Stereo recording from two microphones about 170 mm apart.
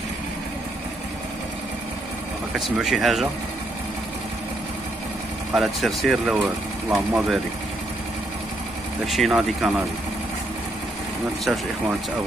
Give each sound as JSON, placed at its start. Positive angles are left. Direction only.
{"t": 2.6, "sound": "speech", "side_deg": 0}
{"t": 5.5, "sound": "speech", "side_deg": 0}
{"t": 9.0, "sound": "speech", "side_deg": 0}